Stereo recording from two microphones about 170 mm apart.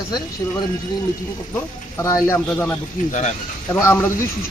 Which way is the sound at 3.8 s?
15° left (ahead or behind).